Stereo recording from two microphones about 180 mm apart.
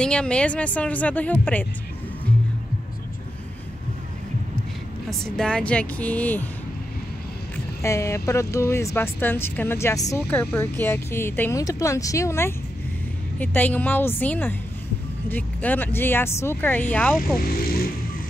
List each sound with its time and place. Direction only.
0.0 s speech: 5° left (ahead or behind)
5.2 s speech: 5° left (ahead or behind)
7.8 s speech: 15° left (ahead or behind)
17.5 s music: 55° left (ahead or behind)